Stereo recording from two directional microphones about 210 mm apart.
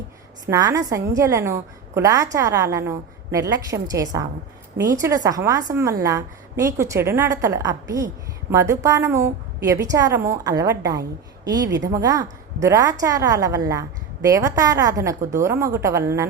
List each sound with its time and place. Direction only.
0.4 s a woman's voice: 15° right (ahead or behind)